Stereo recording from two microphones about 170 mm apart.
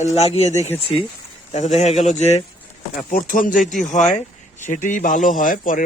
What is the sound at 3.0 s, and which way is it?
Speech, 55° left (ahead or behind).